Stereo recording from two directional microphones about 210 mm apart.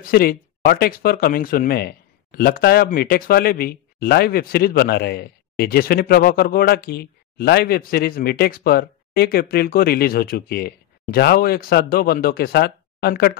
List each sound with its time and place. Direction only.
0.1 s speech: 45° left (ahead or behind)